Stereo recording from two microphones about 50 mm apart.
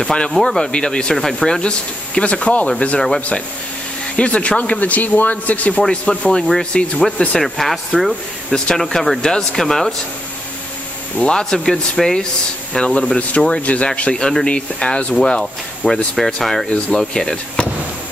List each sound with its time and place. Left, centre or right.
0.0 s speech: centre
0.7 s speech: centre
5.8 s speech: centre
8.5 s speech: centre
11.3 s speech: centre
12.7 s speech: left